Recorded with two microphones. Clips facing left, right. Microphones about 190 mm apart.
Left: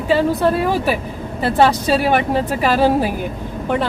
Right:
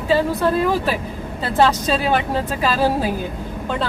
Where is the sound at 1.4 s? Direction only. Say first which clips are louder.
Left 3 dB; 15° left (ahead or behind).